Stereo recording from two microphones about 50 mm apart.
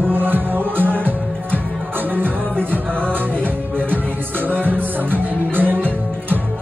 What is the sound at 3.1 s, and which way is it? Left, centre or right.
Music, right.